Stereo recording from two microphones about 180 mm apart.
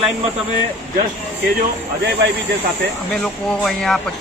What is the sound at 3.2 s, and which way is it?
Speech, centre (ahead or behind).